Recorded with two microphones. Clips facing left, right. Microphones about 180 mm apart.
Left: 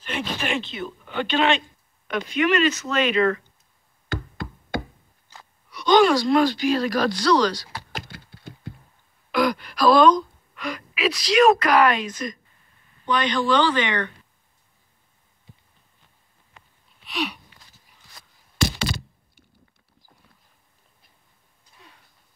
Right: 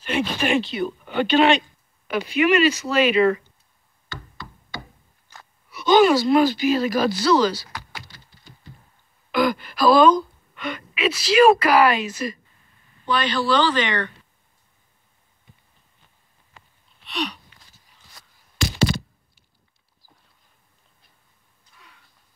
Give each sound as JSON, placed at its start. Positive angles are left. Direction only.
{"t": 0.0, "sound": "speech", "side_deg": -5}
{"t": 4.4, "sound": "knock", "side_deg": 55}
{"t": 5.7, "sound": "speech", "side_deg": -5}
{"t": 8.0, "sound": "a sound", "side_deg": 60}
{"t": 9.3, "sound": "speech", "side_deg": 0}
{"t": 13.1, "sound": "speech", "side_deg": 15}
{"t": 17.0, "sound": "a sound", "side_deg": 5}